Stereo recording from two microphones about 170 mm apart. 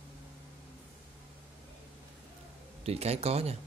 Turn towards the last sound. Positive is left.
turn(degrees=-35)  # may be behind; listen again after turning